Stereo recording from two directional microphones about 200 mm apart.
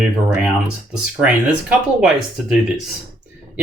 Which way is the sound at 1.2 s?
5° right (ahead or behind).